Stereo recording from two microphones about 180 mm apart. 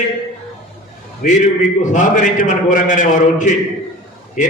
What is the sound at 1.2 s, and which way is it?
A man's voice, 45° left (ahead or behind).